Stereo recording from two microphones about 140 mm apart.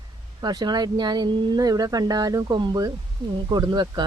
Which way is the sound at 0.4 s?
30° right (ahead or behind).